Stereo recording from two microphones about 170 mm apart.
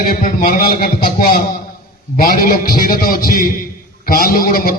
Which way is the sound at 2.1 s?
55° left (ahead or behind).